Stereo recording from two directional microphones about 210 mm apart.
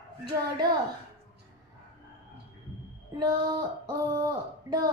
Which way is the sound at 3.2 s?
20° right (ahead or behind).